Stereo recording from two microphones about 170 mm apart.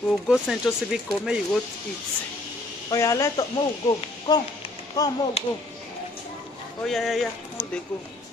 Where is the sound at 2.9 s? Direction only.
20° left (ahead or behind).